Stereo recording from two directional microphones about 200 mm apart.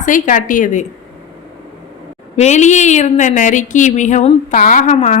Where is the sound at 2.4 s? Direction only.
35° left (ahead or behind).